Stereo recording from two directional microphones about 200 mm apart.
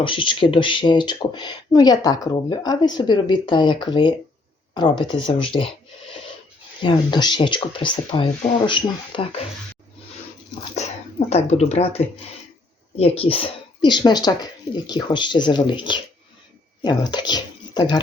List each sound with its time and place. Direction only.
0.0 s speech: 25° left (ahead or behind)
6.8 s speech: 20° left (ahead or behind)
11.3 s speech: 35° left (ahead or behind)
13.1 s speech: 30° left (ahead or behind)